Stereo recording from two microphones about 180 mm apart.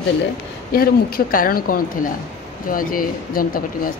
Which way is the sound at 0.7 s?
55° left (ahead or behind).